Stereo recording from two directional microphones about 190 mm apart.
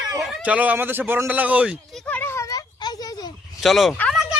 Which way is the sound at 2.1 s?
10° left (ahead or behind).